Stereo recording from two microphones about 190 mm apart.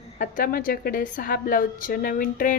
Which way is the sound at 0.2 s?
50° left (ahead or behind).